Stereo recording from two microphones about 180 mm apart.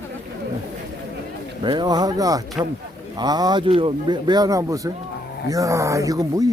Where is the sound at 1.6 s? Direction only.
25° right (ahead or behind).